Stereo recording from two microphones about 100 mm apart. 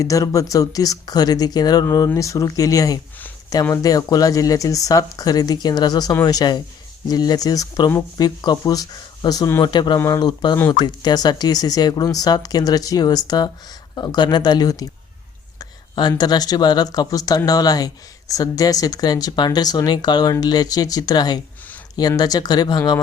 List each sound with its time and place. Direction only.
0.0 s speech: 35° left (ahead or behind)